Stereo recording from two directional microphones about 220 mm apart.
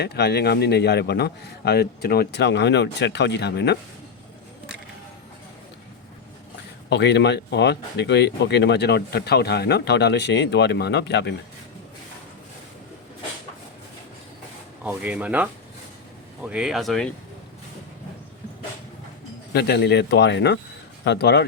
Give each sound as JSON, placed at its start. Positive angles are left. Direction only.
{"t": 0.0, "sound": "speech", "side_deg": 50}
{"t": 6.9, "sound": "speech", "side_deg": 50}
{"t": 14.8, "sound": "speech", "side_deg": -5}
{"t": 19.5, "sound": "speech", "side_deg": 50}